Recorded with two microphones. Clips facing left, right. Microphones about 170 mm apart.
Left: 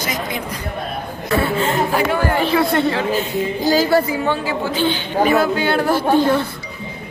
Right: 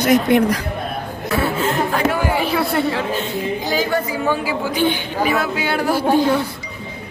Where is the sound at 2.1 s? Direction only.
10° right (ahead or behind).